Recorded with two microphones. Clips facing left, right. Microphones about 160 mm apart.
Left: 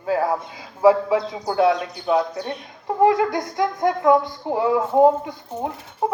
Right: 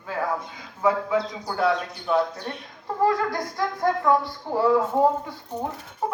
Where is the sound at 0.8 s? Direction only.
30° left (ahead or behind).